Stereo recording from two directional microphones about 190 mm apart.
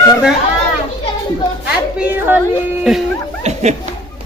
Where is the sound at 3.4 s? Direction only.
35° right (ahead or behind).